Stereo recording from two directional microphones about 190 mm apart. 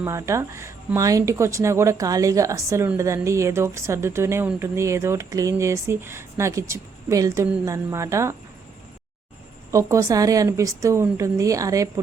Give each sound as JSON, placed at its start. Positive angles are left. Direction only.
{"t": 0.0, "sound": "speech", "side_deg": -15}
{"t": 9.7, "sound": "speech", "side_deg": -15}